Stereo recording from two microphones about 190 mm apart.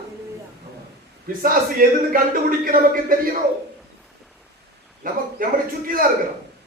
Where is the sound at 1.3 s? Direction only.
50° right (ahead or behind).